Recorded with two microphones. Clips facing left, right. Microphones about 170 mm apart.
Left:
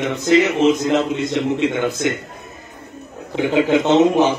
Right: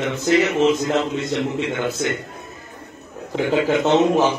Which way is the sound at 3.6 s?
20° left (ahead or behind).